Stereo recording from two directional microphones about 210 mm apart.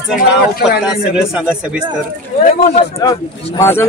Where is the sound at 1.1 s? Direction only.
5° right (ahead or behind).